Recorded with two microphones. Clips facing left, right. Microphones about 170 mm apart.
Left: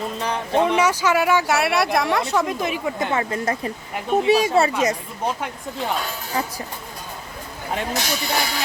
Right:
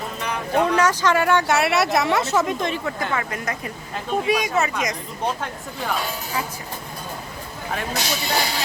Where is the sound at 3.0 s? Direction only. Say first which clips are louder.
Left 3 dB; 25° left (ahead or behind).